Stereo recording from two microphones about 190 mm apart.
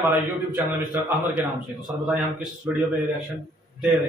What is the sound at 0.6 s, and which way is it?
Speech, 10° right (ahead or behind).